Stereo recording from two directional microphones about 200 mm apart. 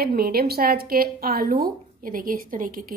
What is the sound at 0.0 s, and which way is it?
Speech, 50° right (ahead or behind).